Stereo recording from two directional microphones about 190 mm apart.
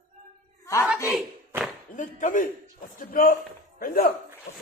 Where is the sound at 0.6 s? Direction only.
15° left (ahead or behind).